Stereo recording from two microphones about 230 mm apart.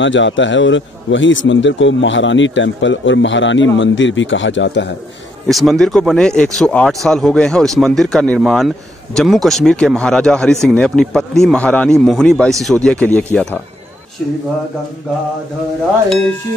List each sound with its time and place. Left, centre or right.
0.0 s a man's voice: left
5.5 s speech: centre